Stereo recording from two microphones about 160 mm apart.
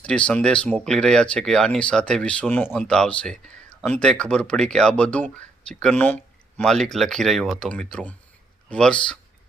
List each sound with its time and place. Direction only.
0.0 s speech: 5° left (ahead or behind)